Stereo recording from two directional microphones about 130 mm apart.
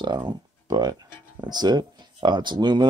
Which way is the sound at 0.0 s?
35° right (ahead or behind).